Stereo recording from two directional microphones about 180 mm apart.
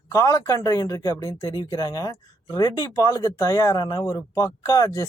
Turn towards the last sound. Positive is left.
turn(degrees=20)  # may be behind; listen again after turning